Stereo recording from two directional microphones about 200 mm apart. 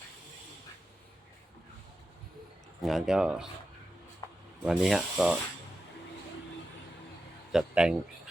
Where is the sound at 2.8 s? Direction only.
Centre (ahead or behind).